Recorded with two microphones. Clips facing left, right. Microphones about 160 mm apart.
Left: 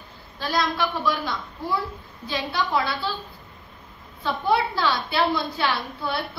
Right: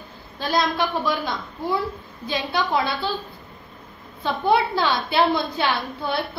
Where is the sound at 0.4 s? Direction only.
20° right (ahead or behind).